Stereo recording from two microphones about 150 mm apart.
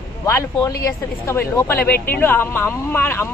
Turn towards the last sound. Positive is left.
turn(degrees=15)  # may be behind; listen again after turning